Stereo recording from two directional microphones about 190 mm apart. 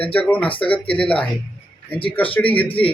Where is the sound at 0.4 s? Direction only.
30° left (ahead or behind).